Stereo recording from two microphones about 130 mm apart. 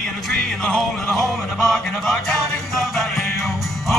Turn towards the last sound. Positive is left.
turn(degrees=0)  # may be behind; listen again after turning